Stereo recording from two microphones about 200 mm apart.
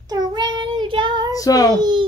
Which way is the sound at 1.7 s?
20° right (ahead or behind).